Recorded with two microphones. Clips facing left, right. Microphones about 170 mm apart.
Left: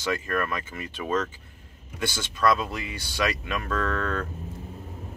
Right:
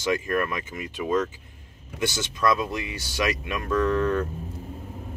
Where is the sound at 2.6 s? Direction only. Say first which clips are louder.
Right 3 dB; 20° right (ahead or behind).